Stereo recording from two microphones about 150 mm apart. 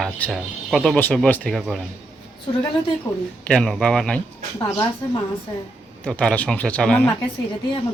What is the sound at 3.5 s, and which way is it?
Speech, 5° left (ahead or behind).